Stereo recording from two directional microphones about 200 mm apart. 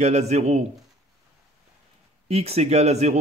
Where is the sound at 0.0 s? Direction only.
35° right (ahead or behind).